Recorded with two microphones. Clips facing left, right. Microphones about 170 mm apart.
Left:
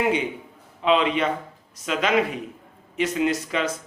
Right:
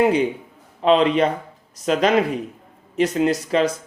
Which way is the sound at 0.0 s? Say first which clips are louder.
Right 6 dB; 35° right (ahead or behind).